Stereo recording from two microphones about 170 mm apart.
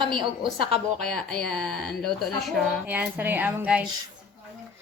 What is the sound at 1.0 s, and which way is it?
Speech, 5° left (ahead or behind).